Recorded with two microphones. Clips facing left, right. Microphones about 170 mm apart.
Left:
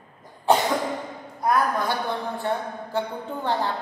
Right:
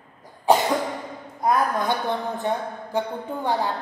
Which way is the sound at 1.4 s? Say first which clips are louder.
Right 1 dB; 20° right (ahead or behind).